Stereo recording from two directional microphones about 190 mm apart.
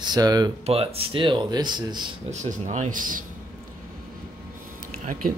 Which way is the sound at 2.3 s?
40° right (ahead or behind).